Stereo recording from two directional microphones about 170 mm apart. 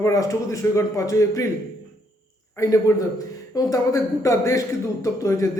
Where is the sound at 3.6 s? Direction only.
20° left (ahead or behind).